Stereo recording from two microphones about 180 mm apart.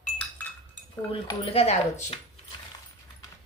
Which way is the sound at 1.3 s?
35° left (ahead or behind).